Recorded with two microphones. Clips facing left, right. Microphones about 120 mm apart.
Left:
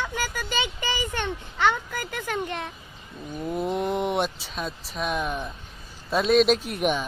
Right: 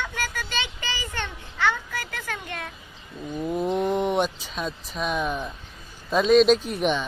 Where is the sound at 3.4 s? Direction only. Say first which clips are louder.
Right 2 dB; centre (ahead or behind).